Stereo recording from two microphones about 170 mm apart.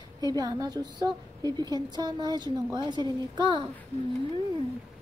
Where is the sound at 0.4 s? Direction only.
20° right (ahead or behind).